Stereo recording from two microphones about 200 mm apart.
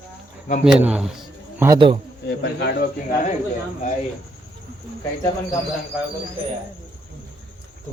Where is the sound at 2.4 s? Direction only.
55° left (ahead or behind).